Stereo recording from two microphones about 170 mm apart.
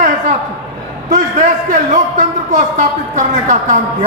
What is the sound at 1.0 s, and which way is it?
A woman's voice, 50° right (ahead or behind).